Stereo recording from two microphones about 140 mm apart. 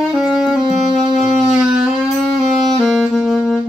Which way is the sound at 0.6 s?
30° right (ahead or behind).